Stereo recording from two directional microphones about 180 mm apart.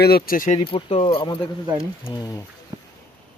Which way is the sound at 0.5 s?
30° left (ahead or behind).